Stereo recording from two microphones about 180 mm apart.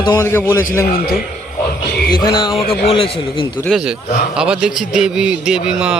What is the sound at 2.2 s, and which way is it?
A man's voice, 25° left (ahead or behind).